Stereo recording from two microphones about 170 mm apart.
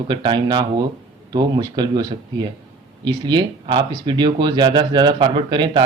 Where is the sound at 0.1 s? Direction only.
25° right (ahead or behind).